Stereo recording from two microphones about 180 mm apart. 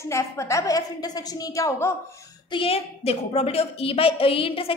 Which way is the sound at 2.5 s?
30° left (ahead or behind).